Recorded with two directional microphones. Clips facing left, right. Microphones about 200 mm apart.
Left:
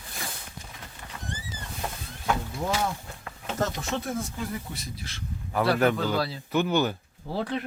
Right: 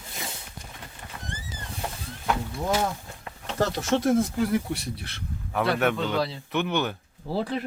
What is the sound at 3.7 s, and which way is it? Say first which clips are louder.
Speech: right 8 dB; 85° right.